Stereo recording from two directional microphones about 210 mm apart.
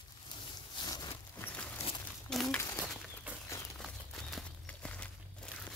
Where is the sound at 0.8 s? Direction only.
20° left (ahead or behind).